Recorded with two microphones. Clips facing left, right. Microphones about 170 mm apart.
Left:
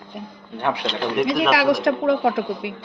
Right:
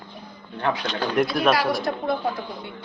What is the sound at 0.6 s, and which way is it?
Speech, 20° left (ahead or behind).